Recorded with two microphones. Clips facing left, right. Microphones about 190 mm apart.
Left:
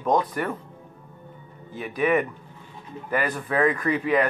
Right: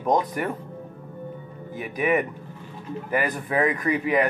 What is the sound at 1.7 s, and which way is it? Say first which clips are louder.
Speech: left 1 dB; 15° right (ahead or behind).